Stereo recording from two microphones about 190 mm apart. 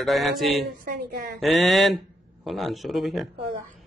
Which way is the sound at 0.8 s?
50° right (ahead or behind).